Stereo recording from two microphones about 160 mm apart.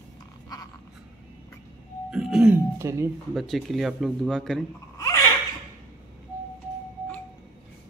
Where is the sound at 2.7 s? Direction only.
15° right (ahead or behind).